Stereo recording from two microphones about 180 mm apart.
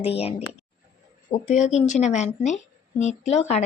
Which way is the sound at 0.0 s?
35° left (ahead or behind).